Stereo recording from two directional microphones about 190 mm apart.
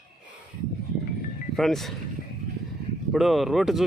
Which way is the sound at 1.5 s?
Centre (ahead or behind).